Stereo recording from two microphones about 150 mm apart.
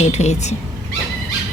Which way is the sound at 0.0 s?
50° left (ahead or behind).